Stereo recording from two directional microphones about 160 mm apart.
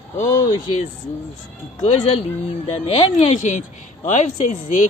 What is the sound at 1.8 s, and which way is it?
Speech, 45° left (ahead or behind).